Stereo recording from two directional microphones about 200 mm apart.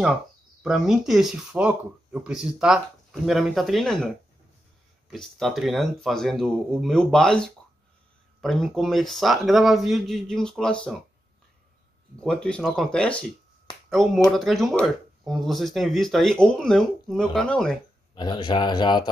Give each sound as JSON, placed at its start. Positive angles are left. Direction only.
{"t": 0.6, "sound": "speech", "side_deg": -5}
{"t": 5.1, "sound": "speech", "side_deg": 0}
{"t": 12.2, "sound": "speech", "side_deg": 5}
{"t": 18.1, "sound": "speech", "side_deg": 20}